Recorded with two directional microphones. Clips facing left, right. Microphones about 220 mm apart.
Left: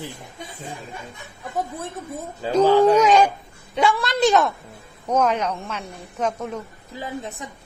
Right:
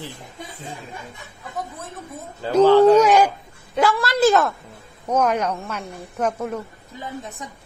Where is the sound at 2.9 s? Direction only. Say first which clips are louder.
Right 1 dB; 10° right (ahead or behind).